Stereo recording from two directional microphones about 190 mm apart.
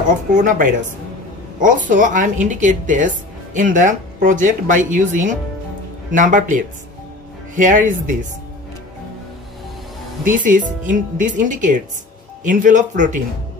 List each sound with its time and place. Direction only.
0.3 s speech: 45° right (ahead or behind)
10.2 s speech: 45° right (ahead or behind)